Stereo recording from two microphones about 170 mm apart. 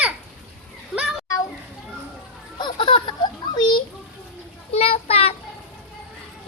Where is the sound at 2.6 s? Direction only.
30° left (ahead or behind).